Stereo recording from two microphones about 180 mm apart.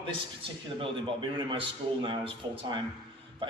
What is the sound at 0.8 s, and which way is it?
A man's voice, 30° right (ahead or behind).